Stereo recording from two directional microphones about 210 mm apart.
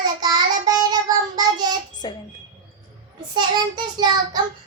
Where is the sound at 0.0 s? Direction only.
20° right (ahead or behind).